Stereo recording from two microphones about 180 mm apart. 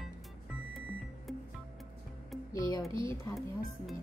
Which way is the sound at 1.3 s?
Centre (ahead or behind).